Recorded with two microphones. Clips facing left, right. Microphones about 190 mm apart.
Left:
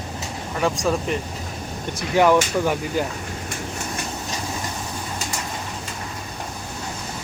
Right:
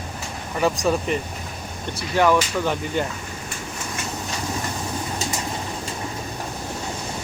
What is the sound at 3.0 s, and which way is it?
Speech, 5° left (ahead or behind).